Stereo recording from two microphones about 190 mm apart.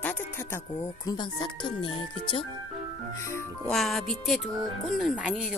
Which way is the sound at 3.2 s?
15° left (ahead or behind).